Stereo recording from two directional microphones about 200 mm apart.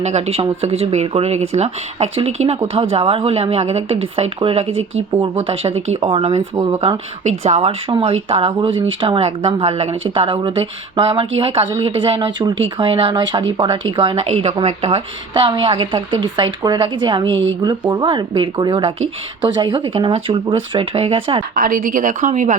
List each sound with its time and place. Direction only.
0.0 s a woman's voice: 35° right (ahead or behind)
21.5 s speech: 45° right (ahead or behind)